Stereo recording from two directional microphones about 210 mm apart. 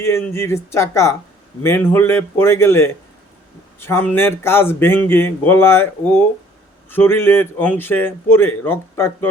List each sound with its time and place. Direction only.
0.0 s speech: 10° left (ahead or behind)